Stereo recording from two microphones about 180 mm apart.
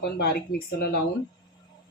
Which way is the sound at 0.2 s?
60° left (ahead or behind).